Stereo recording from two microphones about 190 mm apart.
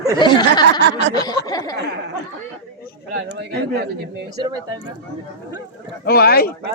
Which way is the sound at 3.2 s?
60° right (ahead or behind).